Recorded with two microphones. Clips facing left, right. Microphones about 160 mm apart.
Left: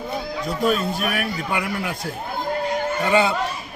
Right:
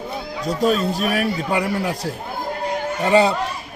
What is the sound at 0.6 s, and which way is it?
A man's voice, 40° right (ahead or behind).